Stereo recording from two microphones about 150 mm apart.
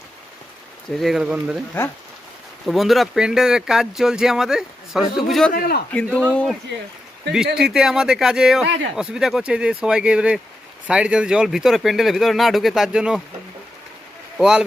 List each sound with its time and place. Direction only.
0.9 s speech: centre (ahead or behind)
2.6 s speech: centre (ahead or behind)
5.5 s a man's voice: 80° left
6.1 s speech: 5° left (ahead or behind)
14.3 s speech: 5° right (ahead or behind)